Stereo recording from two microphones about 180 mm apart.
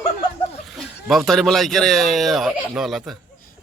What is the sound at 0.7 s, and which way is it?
Speech, centre (ahead or behind).